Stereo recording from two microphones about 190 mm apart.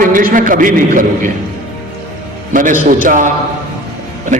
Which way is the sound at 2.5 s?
45° right (ahead or behind).